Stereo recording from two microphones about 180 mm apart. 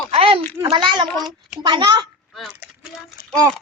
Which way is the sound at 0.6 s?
25° right (ahead or behind).